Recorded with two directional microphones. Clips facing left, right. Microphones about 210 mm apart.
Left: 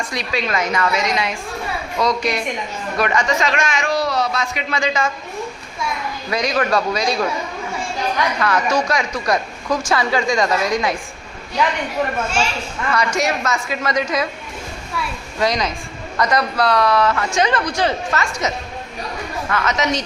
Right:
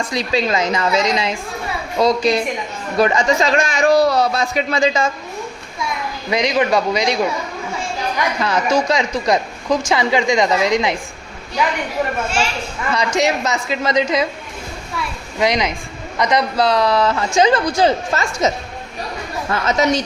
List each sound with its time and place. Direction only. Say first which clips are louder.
0.1 s a man's voice: right 5 dB; 25° right (ahead or behind)
6.3 s speech: right 3 dB; 20° right (ahead or behind)
8.4 s speech: right 3 dB; 25° right (ahead or behind)
12.9 s speech: right 2 dB; 20° right (ahead or behind)
15.4 s speech: right 2 dB; 15° right (ahead or behind)